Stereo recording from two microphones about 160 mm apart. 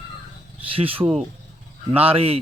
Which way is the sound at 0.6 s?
35° right (ahead or behind).